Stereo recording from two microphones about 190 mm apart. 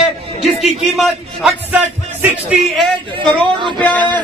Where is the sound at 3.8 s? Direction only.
5° left (ahead or behind).